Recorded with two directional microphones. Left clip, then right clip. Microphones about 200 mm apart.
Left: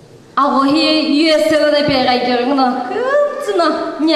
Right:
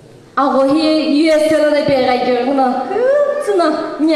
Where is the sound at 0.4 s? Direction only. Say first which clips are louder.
Even; 25° left (ahead or behind).